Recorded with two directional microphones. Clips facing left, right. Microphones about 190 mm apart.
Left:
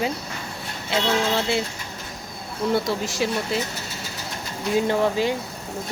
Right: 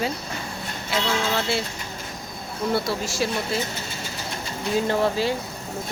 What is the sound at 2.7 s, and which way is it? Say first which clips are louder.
Speech: left 1 dB; 20° left (ahead or behind).